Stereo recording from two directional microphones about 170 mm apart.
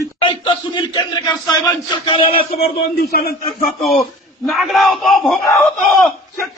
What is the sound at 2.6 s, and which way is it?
Speech, 65° left (ahead or behind).